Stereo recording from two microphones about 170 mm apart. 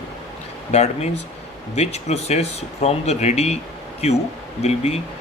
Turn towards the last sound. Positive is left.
turn(degrees=40)  # may be behind; listen again after turning